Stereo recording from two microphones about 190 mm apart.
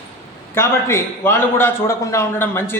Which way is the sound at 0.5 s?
15° left (ahead or behind).